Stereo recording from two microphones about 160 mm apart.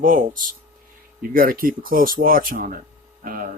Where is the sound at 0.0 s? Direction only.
55° right (ahead or behind).